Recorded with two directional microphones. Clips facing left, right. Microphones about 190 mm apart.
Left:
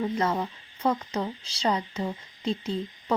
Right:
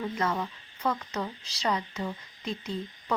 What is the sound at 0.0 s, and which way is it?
Speech, 30° left (ahead or behind).